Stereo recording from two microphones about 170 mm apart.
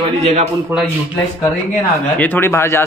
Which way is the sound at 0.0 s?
40° right (ahead or behind).